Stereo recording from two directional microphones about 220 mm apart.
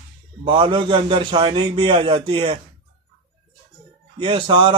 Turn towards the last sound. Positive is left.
turn(degrees=-20)  # may be behind; listen again after turning